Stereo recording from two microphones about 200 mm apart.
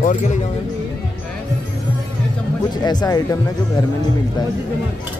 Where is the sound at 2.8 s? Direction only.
20° left (ahead or behind).